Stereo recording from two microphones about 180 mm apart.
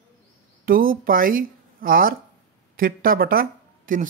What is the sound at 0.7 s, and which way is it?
Speech, 50° right (ahead or behind).